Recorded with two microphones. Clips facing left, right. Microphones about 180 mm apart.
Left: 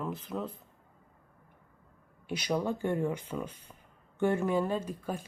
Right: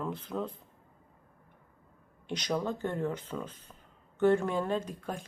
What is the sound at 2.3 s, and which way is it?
Speech, 10° left (ahead or behind).